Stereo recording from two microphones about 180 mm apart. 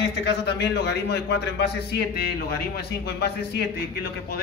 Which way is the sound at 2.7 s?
65° left (ahead or behind).